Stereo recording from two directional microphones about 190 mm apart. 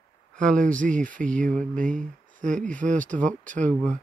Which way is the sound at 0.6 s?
45° right (ahead or behind).